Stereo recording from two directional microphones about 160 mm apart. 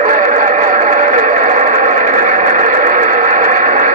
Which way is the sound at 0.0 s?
50° right (ahead or behind).